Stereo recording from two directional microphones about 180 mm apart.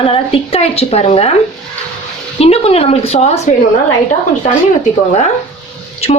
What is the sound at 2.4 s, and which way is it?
A woman's voice, 35° left (ahead or behind).